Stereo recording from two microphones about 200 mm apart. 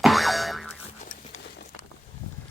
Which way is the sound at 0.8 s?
35° left (ahead or behind).